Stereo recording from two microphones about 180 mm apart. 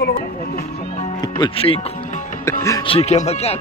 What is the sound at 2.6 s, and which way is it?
Speech, 15° left (ahead or behind).